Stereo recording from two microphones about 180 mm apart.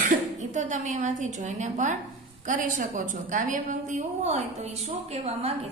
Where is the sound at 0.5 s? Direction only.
40° right (ahead or behind).